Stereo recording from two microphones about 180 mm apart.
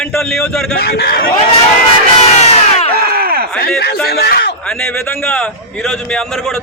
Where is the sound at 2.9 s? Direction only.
60° right (ahead or behind).